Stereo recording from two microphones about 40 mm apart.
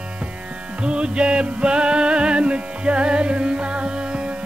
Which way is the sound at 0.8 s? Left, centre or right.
Right.